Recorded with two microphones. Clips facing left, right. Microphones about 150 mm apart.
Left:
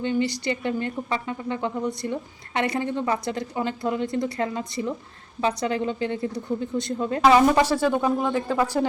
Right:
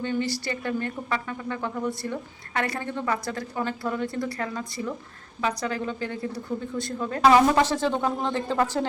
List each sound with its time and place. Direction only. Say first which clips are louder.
0.0 s speech: left 3 dB; 15° left (ahead or behind)
7.5 s speech: left 2 dB; 10° left (ahead or behind)